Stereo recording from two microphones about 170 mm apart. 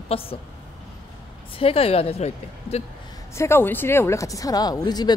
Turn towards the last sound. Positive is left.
turn(degrees=25)  # may be behind; listen again after turning